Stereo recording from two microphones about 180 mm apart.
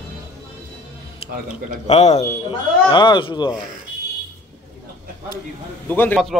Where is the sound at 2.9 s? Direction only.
25° left (ahead or behind).